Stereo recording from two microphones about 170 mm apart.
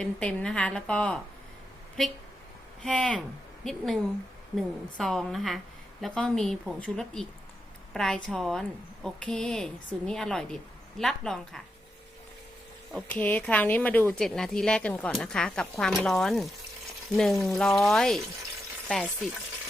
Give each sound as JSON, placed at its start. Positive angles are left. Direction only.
{"t": 0.0, "sound": "a woman's voice", "side_deg": 5}
{"t": 2.8, "sound": "a woman's voice", "side_deg": 5}
{"t": 12.9, "sound": "a woman's voice", "side_deg": 5}